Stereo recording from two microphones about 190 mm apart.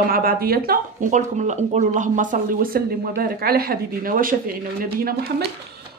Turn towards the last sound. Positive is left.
turn(degrees=-50)  # may be behind; listen again after turning